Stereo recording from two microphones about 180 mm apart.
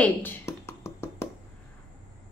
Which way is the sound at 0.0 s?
10° left (ahead or behind).